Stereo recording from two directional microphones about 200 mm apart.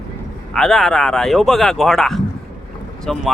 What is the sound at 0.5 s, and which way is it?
Speech, centre (ahead or behind).